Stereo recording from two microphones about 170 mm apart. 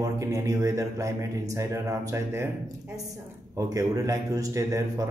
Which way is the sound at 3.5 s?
20° right (ahead or behind).